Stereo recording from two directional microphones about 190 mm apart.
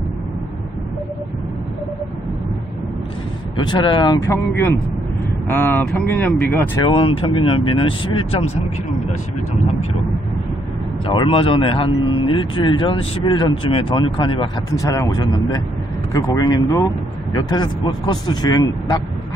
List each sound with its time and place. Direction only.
3.6 s speech: 25° left (ahead or behind)
4.3 s speech: 10° left (ahead or behind)
6.9 s speech: 25° left (ahead or behind)
11.1 s speech: 30° left (ahead or behind)